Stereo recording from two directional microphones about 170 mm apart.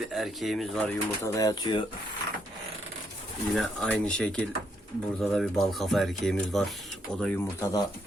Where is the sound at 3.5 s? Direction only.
5° left (ahead or behind).